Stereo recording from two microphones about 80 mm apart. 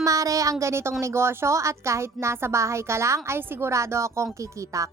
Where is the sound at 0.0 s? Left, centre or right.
Right.